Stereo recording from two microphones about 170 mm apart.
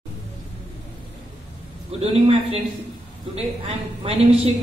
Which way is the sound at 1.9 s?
35° right (ahead or behind).